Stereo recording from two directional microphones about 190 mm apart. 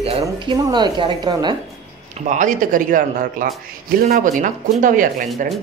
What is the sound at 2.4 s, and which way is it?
Speech, 45° right (ahead or behind).